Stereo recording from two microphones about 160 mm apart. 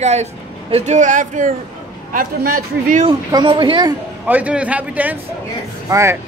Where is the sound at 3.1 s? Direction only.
25° right (ahead or behind).